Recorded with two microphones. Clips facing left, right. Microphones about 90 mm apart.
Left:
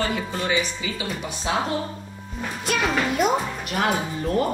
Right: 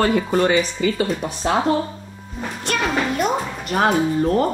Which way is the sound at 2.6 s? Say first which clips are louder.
Right 2 dB; centre (ahead or behind).